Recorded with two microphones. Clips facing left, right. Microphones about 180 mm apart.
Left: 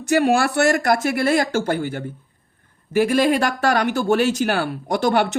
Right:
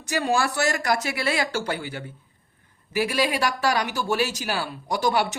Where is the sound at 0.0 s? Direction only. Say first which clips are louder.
Left 7 dB; 60° left (ahead or behind).